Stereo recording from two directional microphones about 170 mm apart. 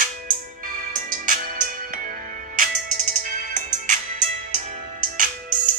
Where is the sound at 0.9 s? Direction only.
50° right (ahead or behind).